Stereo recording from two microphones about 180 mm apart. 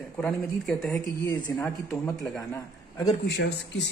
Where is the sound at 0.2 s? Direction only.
5° left (ahead or behind).